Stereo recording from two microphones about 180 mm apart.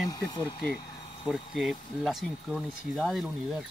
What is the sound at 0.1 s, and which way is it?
Speech, 25° left (ahead or behind).